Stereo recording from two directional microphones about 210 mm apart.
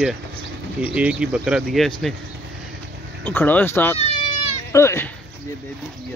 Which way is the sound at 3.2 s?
10° left (ahead or behind).